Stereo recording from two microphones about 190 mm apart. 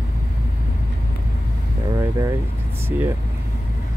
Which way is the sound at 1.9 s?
15° right (ahead or behind).